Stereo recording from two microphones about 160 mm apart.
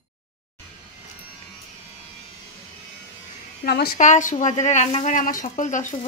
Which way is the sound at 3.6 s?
75° left (ahead or behind).